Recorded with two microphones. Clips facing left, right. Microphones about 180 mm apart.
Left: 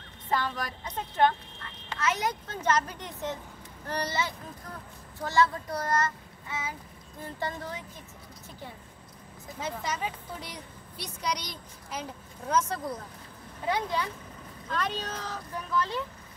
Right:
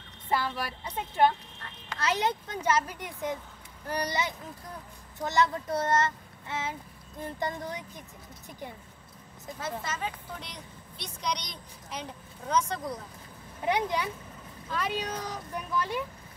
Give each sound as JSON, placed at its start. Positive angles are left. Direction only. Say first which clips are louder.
{"t": 0.3, "sound": "speech", "louder": "even", "side_deg": -10}
{"t": 2.0, "sound": "a child's voice", "louder": "right 1 dB", "side_deg": -30}
{"t": 2.4, "sound": "speech", "louder": "even", "side_deg": -15}
{"t": 9.6, "sound": "speech", "louder": "left 2 dB", "side_deg": 15}
{"t": 13.7, "sound": "speech", "louder": "right 1 dB", "side_deg": -15}